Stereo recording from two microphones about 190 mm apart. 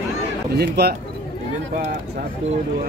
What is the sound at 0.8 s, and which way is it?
Speech, 60° right (ahead or behind).